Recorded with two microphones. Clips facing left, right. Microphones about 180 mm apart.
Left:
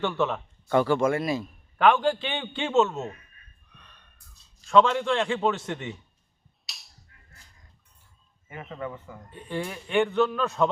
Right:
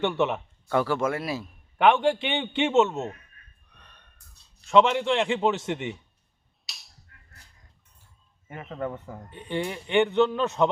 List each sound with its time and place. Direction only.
0.0 s speech: 20° right (ahead or behind)
0.3 s speech: 5° right (ahead or behind)
1.8 s speech: 20° right (ahead or behind)
4.7 s speech: 20° right (ahead or behind)
6.7 s finger snapping: centre (ahead or behind)
8.5 s speech: centre (ahead or behind)
8.8 s a man's voice: 45° right (ahead or behind)
9.3 s speech: 20° right (ahead or behind)